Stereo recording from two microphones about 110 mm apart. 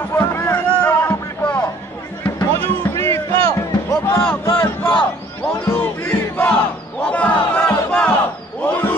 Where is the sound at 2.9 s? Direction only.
25° left (ahead or behind).